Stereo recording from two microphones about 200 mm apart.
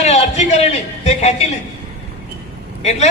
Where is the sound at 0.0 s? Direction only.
35° left (ahead or behind).